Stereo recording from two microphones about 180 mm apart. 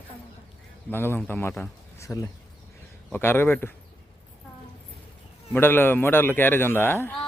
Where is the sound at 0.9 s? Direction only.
10° left (ahead or behind).